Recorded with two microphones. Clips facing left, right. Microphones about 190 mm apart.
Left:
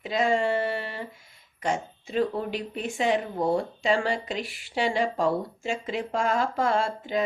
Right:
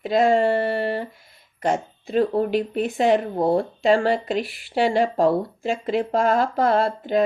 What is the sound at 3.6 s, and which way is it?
Speech, 55° right (ahead or behind).